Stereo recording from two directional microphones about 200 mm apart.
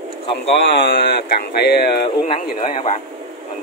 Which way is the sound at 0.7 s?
60° left (ahead or behind).